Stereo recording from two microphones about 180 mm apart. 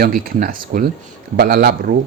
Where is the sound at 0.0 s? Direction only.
50° right (ahead or behind).